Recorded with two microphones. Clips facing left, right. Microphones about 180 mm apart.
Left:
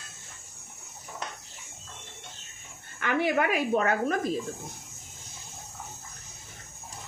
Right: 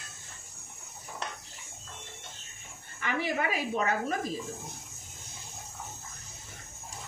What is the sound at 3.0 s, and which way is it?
Speech, 60° left (ahead or behind).